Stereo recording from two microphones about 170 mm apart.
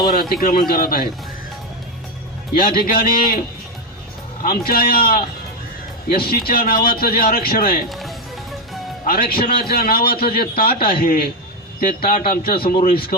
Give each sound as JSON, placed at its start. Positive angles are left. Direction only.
{"t": 0.1, "sound": "a man's voice", "side_deg": 60}
{"t": 2.6, "sound": "a man's voice", "side_deg": 65}
{"t": 4.4, "sound": "a man's voice", "side_deg": 65}
{"t": 7.9, "sound": "music", "side_deg": 0}
{"t": 9.0, "sound": "a man's voice", "side_deg": 60}